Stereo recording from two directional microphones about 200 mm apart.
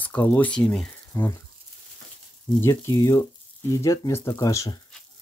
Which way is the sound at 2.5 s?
15° left (ahead or behind).